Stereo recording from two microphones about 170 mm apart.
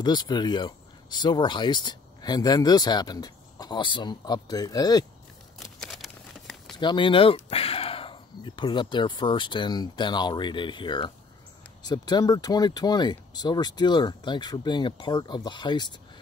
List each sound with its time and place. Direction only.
0.0 s speech: 25° left (ahead or behind)
5.6 s a sound: centre (ahead or behind)
6.8 s speech: 25° left (ahead or behind)